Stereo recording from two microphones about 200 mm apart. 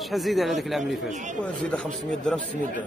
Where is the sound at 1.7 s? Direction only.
5° left (ahead or behind).